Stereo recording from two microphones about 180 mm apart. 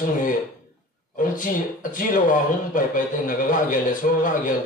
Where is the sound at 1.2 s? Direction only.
45° left (ahead or behind).